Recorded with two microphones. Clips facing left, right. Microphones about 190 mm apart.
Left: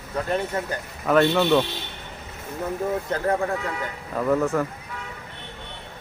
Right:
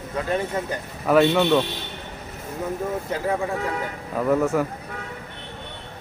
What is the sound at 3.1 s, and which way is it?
Speech, 10° right (ahead or behind).